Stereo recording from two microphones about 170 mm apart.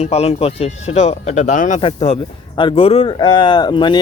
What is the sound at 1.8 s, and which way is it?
Speech, 35° left (ahead or behind).